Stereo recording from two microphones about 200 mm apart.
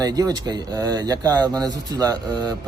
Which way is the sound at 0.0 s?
20° right (ahead or behind).